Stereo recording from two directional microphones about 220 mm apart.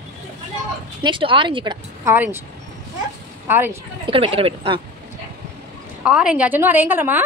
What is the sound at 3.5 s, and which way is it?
Speech, 10° right (ahead or behind).